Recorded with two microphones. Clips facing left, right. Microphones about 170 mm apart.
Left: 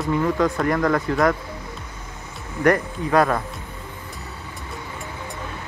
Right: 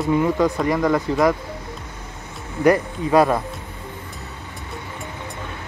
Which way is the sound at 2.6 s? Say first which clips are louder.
Right 2 dB; 15° right (ahead or behind).